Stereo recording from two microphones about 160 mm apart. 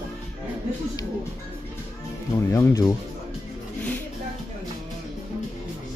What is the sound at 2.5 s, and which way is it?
Speech, 20° left (ahead or behind).